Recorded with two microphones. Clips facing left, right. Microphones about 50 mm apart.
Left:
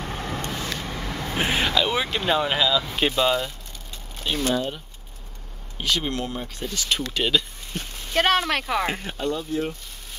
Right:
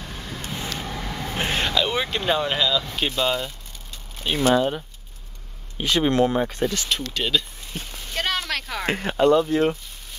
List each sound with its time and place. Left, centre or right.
0.0 s vehicle: left
0.8 s speech: centre
4.2 s speech: centre
5.8 s speech: right
6.2 s speech: right
6.9 s speech: centre
8.2 s speech: left
8.8 s speech: right